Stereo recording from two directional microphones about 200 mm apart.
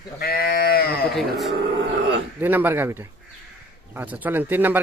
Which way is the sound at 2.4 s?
10° right (ahead or behind).